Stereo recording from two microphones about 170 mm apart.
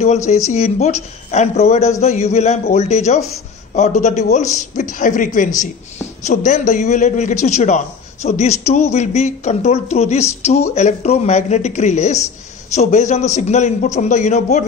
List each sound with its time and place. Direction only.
0.5 s a man's voice: 40° left (ahead or behind)